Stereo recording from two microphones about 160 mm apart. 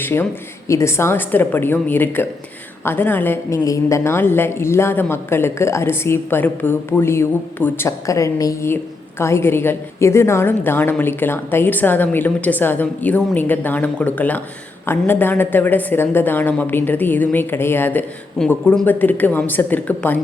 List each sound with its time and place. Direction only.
0.0 s a woman's voice: 15° left (ahead or behind)